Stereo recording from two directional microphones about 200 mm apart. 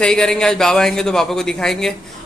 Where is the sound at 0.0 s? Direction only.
5° left (ahead or behind).